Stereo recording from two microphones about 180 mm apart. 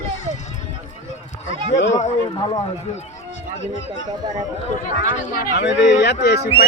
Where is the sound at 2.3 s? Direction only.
25° left (ahead or behind).